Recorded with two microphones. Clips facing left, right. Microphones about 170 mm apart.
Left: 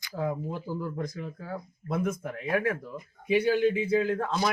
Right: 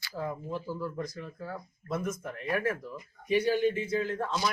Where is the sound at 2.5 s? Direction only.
60° left (ahead or behind).